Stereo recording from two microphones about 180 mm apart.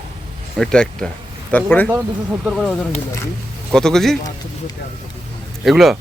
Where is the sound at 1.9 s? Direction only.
10° right (ahead or behind).